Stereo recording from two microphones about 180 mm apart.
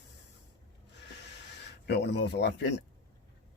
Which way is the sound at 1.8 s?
70° left (ahead or behind).